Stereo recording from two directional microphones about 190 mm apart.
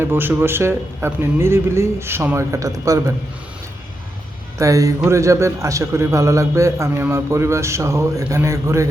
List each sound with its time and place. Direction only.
0.0 s a man's voice: 10° right (ahead or behind)
4.5 s a man's voice: 15° right (ahead or behind)